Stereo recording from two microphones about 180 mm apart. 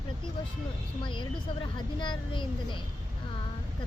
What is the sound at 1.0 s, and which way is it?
Speech, 25° left (ahead or behind).